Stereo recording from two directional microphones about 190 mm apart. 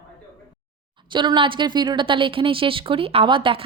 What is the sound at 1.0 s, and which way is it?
Speech, 25° right (ahead or behind).